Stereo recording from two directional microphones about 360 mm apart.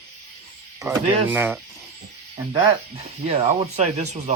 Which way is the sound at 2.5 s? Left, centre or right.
Centre.